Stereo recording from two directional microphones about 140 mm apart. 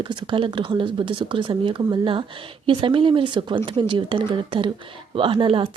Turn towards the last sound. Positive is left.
turn(degrees=-35)  # may be behind; listen again after turning